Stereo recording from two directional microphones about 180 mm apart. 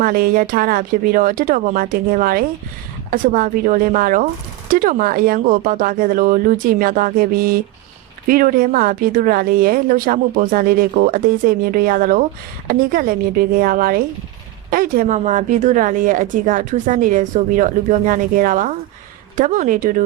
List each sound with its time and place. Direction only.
0.0 s a woman's voice: 55° right (ahead or behind)